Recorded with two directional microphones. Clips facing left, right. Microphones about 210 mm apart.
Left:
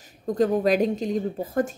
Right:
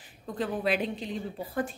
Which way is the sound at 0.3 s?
45° left (ahead or behind).